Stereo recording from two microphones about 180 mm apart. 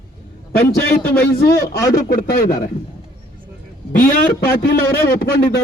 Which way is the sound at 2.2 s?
55° left (ahead or behind).